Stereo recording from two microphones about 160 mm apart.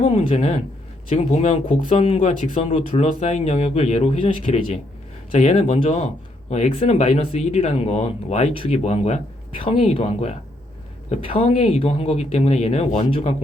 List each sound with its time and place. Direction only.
0.0 s speech: 45° left (ahead or behind)